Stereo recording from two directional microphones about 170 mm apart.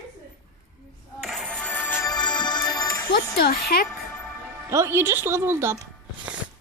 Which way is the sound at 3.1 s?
65° left (ahead or behind).